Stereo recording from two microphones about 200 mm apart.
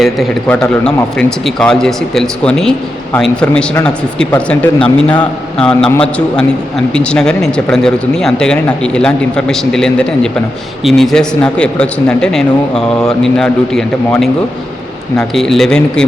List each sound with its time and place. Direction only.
0.0 s a man's voice: 5° left (ahead or behind)